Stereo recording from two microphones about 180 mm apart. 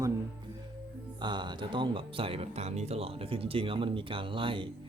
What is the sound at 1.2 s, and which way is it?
Speech, 25° right (ahead or behind).